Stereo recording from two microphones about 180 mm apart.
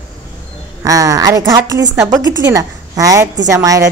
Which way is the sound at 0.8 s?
20° right (ahead or behind).